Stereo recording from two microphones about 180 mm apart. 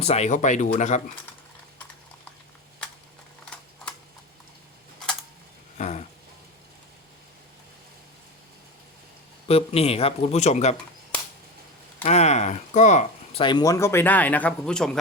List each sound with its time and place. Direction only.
0.0 s speech: 35° left (ahead or behind)
5.7 s dog: 40° left (ahead or behind)
9.5 s speech: 35° left (ahead or behind)
12.0 s a sound: 35° left (ahead or behind)
13.4 s speech: 25° left (ahead or behind); by 14.9 s 5° left (ahead or behind)